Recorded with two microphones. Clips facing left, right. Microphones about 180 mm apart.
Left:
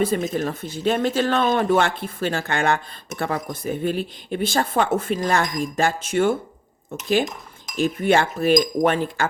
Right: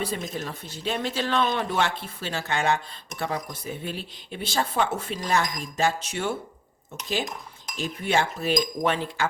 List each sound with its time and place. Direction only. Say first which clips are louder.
0.0 s speech: left 9 dB; 50° left (ahead or behind)
7.8 s speech: left 7 dB; 55° left (ahead or behind)